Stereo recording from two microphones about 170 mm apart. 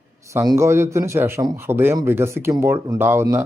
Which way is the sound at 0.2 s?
15° right (ahead or behind).